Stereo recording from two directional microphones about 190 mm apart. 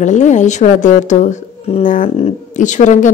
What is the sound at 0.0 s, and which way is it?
Speech, 40° left (ahead or behind).